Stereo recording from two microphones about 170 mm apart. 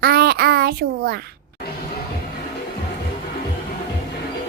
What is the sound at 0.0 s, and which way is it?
Child singing, 65° right (ahead or behind).